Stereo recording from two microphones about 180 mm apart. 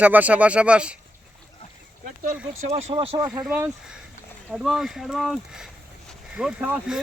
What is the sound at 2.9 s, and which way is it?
Speech, 30° right (ahead or behind).